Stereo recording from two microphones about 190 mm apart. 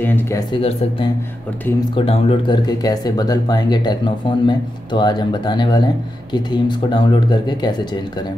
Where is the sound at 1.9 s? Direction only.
30° left (ahead or behind).